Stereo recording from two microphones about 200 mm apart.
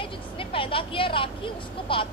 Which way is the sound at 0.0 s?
25° left (ahead or behind).